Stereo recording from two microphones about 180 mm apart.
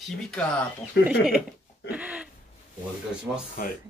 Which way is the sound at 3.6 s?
50° left (ahead or behind).